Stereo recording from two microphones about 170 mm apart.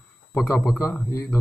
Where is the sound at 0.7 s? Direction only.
15° left (ahead or behind).